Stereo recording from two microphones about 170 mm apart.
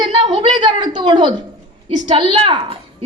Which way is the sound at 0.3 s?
25° right (ahead or behind).